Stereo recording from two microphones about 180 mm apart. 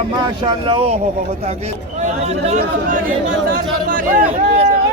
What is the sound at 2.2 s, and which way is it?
Speech, 40° right (ahead or behind).